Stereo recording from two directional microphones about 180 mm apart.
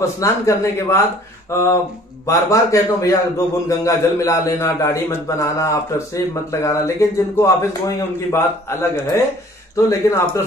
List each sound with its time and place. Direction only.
0.0 s a man's voice: 15° left (ahead or behind)